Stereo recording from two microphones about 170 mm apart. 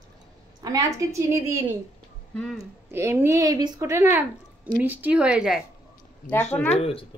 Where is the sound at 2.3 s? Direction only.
5° left (ahead or behind).